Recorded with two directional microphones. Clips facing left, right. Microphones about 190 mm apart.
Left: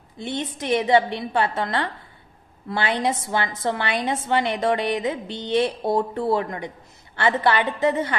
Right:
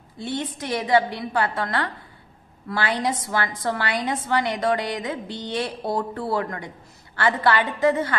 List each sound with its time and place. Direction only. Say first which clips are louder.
0.2 s a woman's voice: even; 20° left (ahead or behind)